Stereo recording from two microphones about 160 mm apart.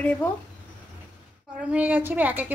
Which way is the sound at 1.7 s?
10° right (ahead or behind).